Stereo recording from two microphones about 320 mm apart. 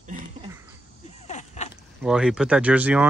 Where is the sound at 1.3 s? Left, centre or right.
Left.